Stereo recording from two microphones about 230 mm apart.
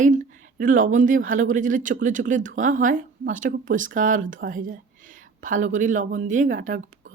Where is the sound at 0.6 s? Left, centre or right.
Right.